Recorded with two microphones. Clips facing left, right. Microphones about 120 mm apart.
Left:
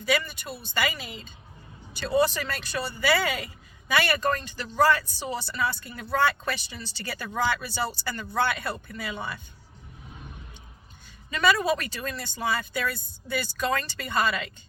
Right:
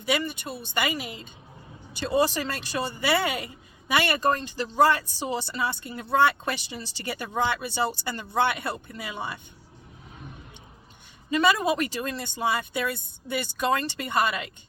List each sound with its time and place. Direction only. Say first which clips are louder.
0.0 s speech: even; 25° right (ahead or behind)
11.3 s speech: right 1 dB; 25° right (ahead or behind)